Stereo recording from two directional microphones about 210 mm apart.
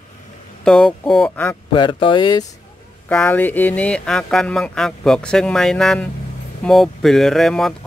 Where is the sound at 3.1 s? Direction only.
5° left (ahead or behind).